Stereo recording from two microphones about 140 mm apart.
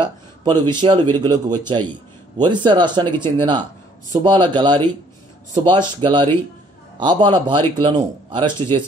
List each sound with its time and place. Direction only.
0.0 s speech: 35° right (ahead or behind)